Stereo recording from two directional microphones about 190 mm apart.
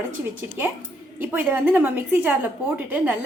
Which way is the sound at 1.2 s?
10° right (ahead or behind).